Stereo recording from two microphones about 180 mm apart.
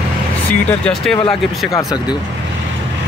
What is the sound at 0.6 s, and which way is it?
Speech, 10° left (ahead or behind).